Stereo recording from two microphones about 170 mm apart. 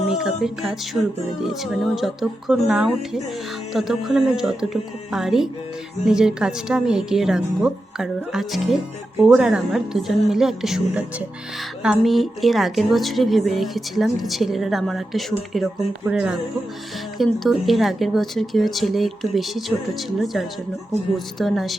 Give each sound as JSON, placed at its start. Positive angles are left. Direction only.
{"t": 0.1, "sound": "music", "side_deg": -5}
{"t": 1.4, "sound": "speech", "side_deg": 0}